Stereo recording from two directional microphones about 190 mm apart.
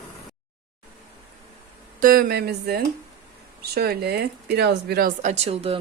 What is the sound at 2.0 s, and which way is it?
Speech, 50° right (ahead or behind).